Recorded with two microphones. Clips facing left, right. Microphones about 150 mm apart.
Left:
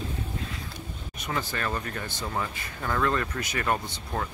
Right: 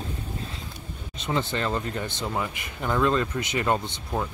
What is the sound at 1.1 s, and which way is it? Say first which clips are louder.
Speech: right 5 dB; 25° right (ahead or behind).